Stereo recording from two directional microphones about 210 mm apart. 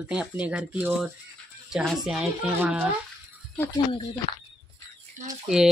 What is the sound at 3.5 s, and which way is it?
Speech, 20° left (ahead or behind).